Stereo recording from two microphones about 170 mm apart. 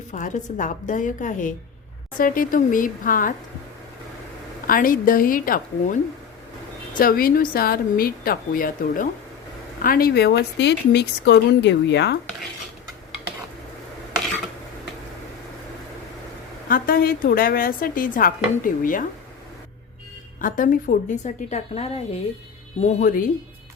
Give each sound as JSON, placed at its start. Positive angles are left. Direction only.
{"t": 0.1, "sound": "a woman's voice", "side_deg": 45}
{"t": 4.6, "sound": "speech", "side_deg": 55}
{"t": 7.0, "sound": "speech", "side_deg": 60}
{"t": 16.6, "sound": "speech", "side_deg": 60}
{"t": 20.4, "sound": "a woman's voice", "side_deg": 50}